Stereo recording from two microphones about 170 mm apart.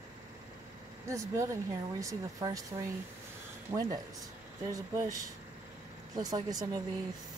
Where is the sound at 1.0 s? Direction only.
20° right (ahead or behind).